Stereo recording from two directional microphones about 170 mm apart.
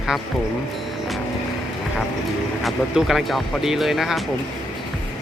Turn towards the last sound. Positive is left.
turn(degrees=0)  # may be behind; listen again after turning